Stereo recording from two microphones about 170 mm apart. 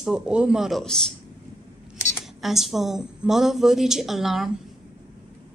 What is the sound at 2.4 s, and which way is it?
Speech, centre (ahead or behind).